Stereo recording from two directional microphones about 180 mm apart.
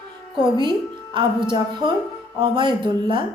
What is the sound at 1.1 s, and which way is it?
A woman's voice, 25° right (ahead or behind).